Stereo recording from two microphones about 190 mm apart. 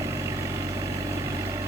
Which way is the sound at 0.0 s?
15° right (ahead or behind).